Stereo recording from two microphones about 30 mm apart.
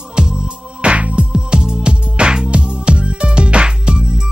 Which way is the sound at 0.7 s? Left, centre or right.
Right.